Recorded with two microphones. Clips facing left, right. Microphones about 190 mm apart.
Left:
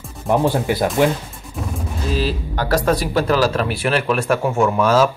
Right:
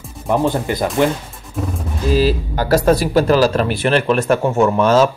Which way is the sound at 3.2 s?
35° right (ahead or behind).